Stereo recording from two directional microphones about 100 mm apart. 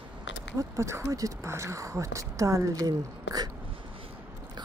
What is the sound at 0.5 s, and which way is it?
Speech, 30° right (ahead or behind).